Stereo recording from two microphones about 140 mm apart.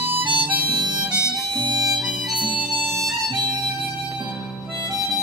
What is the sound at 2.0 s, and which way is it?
Harmonica, centre (ahead or behind).